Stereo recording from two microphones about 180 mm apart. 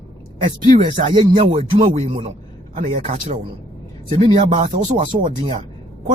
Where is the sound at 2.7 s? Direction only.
45° right (ahead or behind).